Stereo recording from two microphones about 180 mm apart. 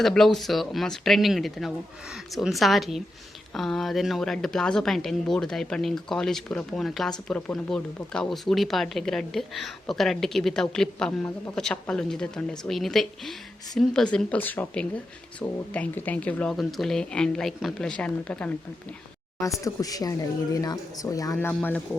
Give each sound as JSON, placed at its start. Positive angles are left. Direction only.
{"t": 0.0, "sound": "speech", "side_deg": 0}
{"t": 19.4, "sound": "speech", "side_deg": 20}